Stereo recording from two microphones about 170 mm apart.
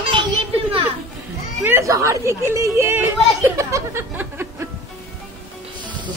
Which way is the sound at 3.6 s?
20° right (ahead or behind).